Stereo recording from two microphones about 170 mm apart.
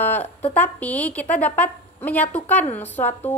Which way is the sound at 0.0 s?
10° left (ahead or behind).